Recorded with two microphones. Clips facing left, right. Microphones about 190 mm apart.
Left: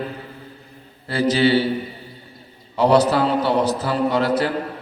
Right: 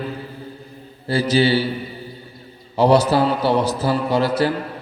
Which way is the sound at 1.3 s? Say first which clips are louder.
Even; 30° right (ahead or behind).